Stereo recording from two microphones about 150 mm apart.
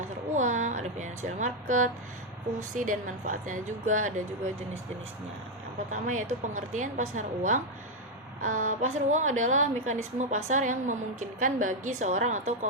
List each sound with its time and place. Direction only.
0.3 s a sound: 55° right (ahead or behind)
2.7 s a woman's voice: 60° right (ahead or behind)
5.9 s a woman's voice: 55° right (ahead or behind)